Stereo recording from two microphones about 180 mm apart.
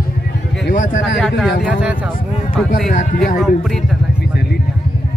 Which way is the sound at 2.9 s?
45° left (ahead or behind).